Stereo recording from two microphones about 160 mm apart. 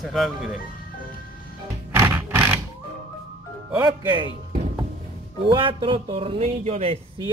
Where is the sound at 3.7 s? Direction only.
10° right (ahead or behind).